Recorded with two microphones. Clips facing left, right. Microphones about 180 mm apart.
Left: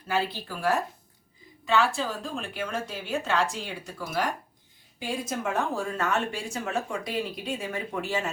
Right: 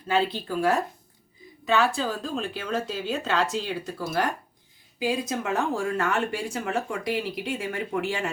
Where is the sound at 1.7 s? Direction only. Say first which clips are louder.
Right 1 dB; 20° right (ahead or behind).